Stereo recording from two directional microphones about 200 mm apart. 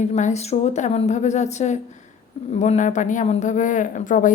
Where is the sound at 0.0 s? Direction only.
35° left (ahead or behind).